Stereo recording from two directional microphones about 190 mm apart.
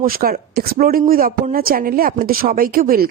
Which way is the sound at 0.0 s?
50° right (ahead or behind).